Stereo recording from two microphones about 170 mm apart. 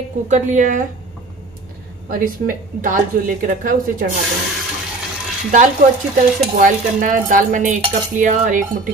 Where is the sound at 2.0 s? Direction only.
55° right (ahead or behind).